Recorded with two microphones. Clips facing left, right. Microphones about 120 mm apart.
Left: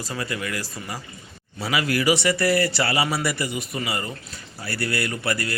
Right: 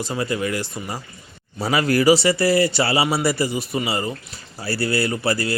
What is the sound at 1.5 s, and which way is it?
Speech, 40° right (ahead or behind).